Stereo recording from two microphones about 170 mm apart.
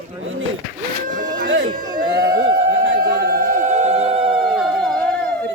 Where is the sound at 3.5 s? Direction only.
45° right (ahead or behind); by 4.5 s 30° right (ahead or behind).